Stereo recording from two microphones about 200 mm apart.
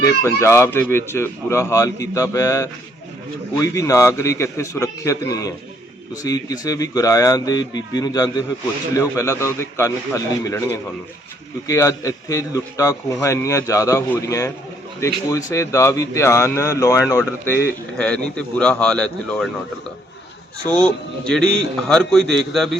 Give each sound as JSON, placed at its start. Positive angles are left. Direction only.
{"t": 0.0, "sound": "a man's voice", "side_deg": 15}
{"t": 20.7, "sound": "a man's voice", "side_deg": 5}